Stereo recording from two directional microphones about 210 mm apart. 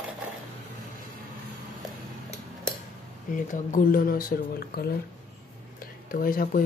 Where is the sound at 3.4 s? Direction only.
40° left (ahead or behind).